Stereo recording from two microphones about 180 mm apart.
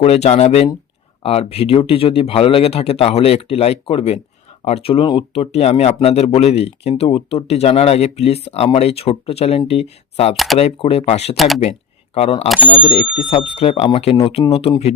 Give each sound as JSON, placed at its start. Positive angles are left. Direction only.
{"t": 0.0, "sound": "speech", "side_deg": 35}
{"t": 10.3, "sound": "speech", "side_deg": 0}
{"t": 10.6, "sound": "speech", "side_deg": 35}
{"t": 11.3, "sound": "speech", "side_deg": 0}
{"t": 12.7, "sound": "speech", "side_deg": 35}